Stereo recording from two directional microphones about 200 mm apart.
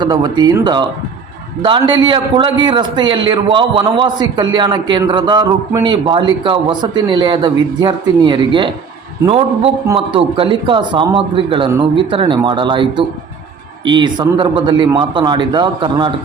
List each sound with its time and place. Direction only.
0.0 s a man's voice: 20° right (ahead or behind)